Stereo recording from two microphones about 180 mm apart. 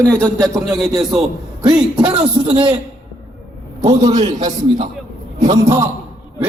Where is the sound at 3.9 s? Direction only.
40° right (ahead or behind).